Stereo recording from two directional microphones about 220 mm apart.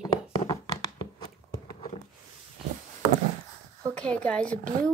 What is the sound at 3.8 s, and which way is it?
Speech, 5° left (ahead or behind).